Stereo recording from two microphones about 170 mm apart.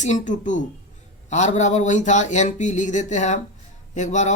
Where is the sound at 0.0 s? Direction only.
45° left (ahead or behind).